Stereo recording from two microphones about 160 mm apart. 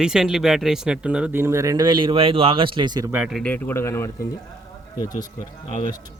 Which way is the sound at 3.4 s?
10° left (ahead or behind).